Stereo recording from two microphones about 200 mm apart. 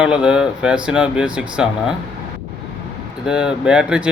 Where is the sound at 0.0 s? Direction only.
5° right (ahead or behind).